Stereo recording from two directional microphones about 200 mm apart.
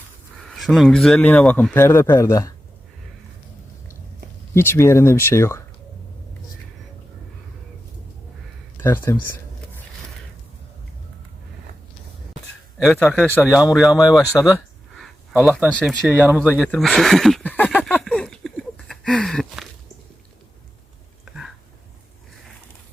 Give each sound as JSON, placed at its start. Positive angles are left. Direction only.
{"t": 0.3, "sound": "speech", "side_deg": 0}
{"t": 4.5, "sound": "speech", "side_deg": 10}
{"t": 8.8, "sound": "speech", "side_deg": 10}
{"t": 12.8, "sound": "speech", "side_deg": 5}
{"t": 14.0, "sound": "speech", "side_deg": 20}
{"t": 14.3, "sound": "speech", "side_deg": -5}
{"t": 16.6, "sound": "a sound", "side_deg": 0}
{"t": 21.3, "sound": "a sound", "side_deg": -5}